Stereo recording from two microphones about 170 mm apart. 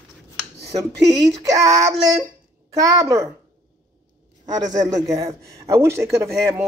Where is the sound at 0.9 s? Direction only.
90° right.